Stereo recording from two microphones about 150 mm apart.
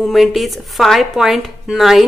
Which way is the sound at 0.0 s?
Centre (ahead or behind).